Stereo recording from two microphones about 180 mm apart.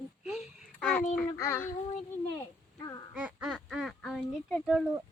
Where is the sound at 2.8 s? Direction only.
20° left (ahead or behind).